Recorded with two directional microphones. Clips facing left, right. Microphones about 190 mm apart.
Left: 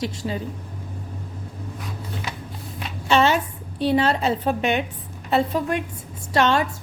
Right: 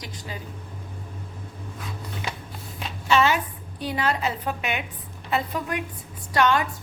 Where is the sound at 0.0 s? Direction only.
25° left (ahead or behind).